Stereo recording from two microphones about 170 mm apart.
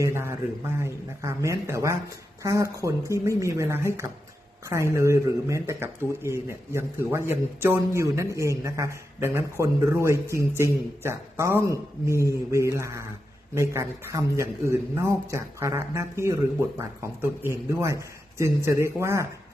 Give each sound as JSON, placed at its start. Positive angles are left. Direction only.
{"t": 0.0, "sound": "a man's voice", "side_deg": -15}